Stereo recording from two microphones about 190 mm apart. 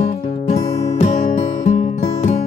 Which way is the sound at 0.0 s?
35° left (ahead or behind).